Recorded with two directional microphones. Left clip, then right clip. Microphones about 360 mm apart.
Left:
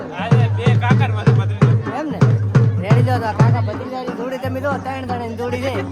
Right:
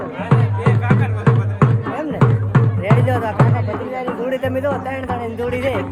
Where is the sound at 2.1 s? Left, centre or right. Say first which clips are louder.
Right 2 dB; centre.